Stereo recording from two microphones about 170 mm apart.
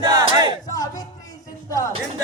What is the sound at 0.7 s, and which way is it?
Speech, 20° left (ahead or behind).